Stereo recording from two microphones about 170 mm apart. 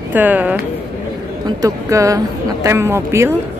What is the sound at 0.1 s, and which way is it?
Speech, 10° right (ahead or behind).